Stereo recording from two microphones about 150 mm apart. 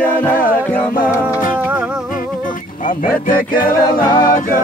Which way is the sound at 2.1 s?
65° left (ahead or behind).